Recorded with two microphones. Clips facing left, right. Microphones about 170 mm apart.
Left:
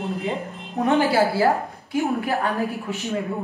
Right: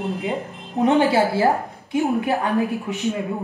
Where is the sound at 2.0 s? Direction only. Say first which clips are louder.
Right 2 dB; 20° right (ahead or behind).